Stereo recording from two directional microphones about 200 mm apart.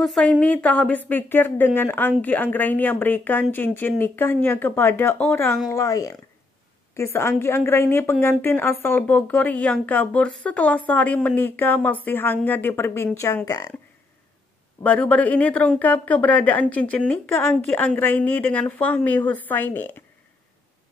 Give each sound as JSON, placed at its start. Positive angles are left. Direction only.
{"t": 0.0, "sound": "speech", "side_deg": 5}
{"t": 14.8, "sound": "speech", "side_deg": 5}